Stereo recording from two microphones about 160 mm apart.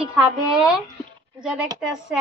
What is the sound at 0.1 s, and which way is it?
Speech, 5° right (ahead or behind).